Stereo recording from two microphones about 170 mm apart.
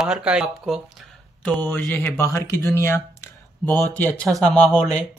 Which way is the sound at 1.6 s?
10° left (ahead or behind).